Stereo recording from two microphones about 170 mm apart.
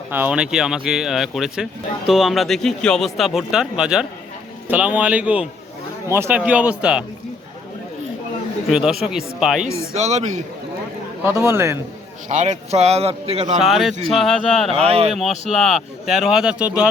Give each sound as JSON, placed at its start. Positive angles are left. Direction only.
{"t": 0.1, "sound": "speech", "side_deg": -10}
{"t": 8.7, "sound": "speech", "side_deg": -5}
{"t": 9.9, "sound": "a man's voice", "side_deg": -40}
{"t": 11.2, "sound": "speech", "side_deg": -15}
{"t": 12.3, "sound": "a man's voice", "side_deg": -45}
{"t": 13.6, "sound": "speech", "side_deg": 0}
{"t": 14.7, "sound": "a man's voice", "side_deg": -35}
{"t": 15.1, "sound": "speech", "side_deg": 0}